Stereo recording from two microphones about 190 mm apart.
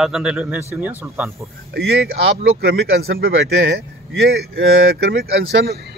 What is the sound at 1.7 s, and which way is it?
A man's voice, 55° right (ahead or behind).